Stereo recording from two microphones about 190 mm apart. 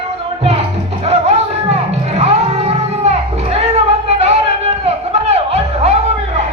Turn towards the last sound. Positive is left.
turn(degrees=-35)  # may be behind; listen again after turning